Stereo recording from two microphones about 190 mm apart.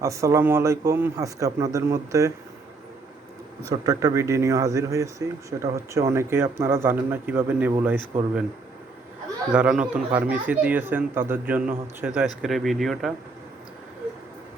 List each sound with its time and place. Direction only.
0.0 s speech: 15° right (ahead or behind)
3.6 s speech: 15° right (ahead or behind)
9.5 s speech: 5° right (ahead or behind)